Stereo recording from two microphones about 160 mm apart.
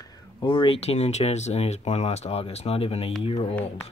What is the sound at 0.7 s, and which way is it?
Speech, 40° left (ahead or behind).